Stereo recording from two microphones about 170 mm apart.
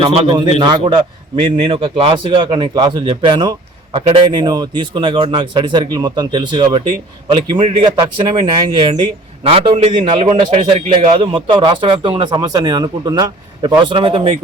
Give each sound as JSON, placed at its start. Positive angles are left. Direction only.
{"t": 0.0, "sound": "a man's voice", "side_deg": -25}